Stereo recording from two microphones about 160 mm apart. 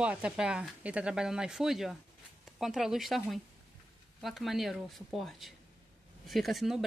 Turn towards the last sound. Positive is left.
turn(degrees=0)  # may be behind; listen again after turning